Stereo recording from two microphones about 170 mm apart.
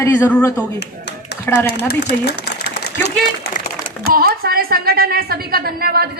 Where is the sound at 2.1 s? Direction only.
70° left (ahead or behind).